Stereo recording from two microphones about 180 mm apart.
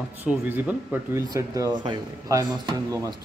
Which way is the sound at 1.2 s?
20° right (ahead or behind).